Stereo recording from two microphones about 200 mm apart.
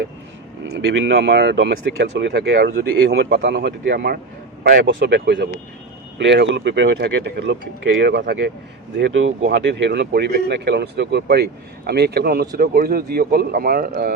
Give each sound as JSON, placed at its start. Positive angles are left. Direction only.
{"t": 0.6, "sound": "speech", "side_deg": -65}
{"t": 9.0, "sound": "speech", "side_deg": -65}